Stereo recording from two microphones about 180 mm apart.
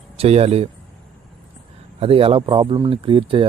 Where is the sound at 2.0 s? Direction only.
30° right (ahead or behind).